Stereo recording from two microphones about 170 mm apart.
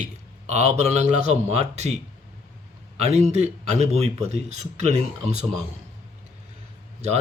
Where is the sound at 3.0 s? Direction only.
40° right (ahead or behind).